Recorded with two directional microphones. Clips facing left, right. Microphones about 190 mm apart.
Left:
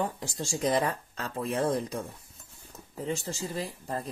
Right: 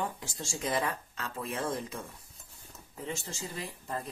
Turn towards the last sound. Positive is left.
turn(degrees=35)  # may be behind; listen again after turning